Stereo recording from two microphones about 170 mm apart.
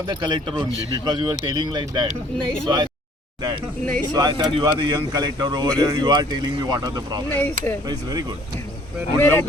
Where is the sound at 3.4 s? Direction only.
25° right (ahead or behind).